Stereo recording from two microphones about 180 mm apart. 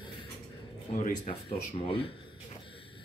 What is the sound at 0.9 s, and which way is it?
Speech, 40° left (ahead or behind).